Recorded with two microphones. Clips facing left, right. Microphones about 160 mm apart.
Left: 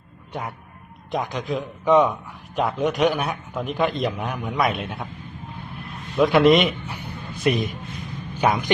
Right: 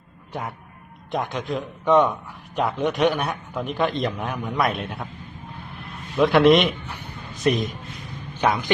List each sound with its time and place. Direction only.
0.3 s a man's voice: centre (ahead or behind)
5.7 s a sound: centre (ahead or behind)
7.4 s a man's voice: 10° left (ahead or behind)